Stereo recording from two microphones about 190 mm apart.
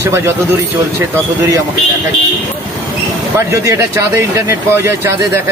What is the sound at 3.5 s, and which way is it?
Speech, 15° right (ahead or behind).